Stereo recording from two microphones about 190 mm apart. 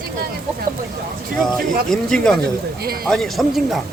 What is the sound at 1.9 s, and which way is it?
Speech, 5° left (ahead or behind).